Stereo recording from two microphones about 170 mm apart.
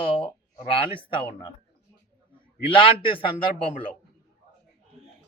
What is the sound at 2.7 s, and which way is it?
Speech, 30° left (ahead or behind).